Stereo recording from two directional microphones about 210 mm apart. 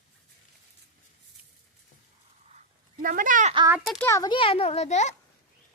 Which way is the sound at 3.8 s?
10° left (ahead or behind).